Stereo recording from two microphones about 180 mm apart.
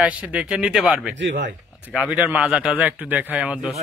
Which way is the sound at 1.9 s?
5° right (ahead or behind).